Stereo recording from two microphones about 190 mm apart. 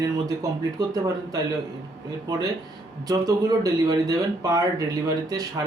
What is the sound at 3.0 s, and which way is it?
Speech, 20° right (ahead or behind).